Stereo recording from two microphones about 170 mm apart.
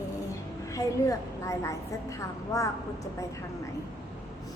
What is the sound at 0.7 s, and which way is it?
A woman's voice, 20° left (ahead or behind).